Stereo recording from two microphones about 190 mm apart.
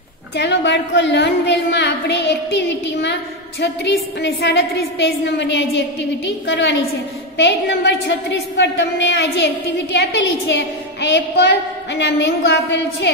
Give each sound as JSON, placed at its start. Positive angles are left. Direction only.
{"t": 0.4, "sound": "a woman's voice", "side_deg": 65}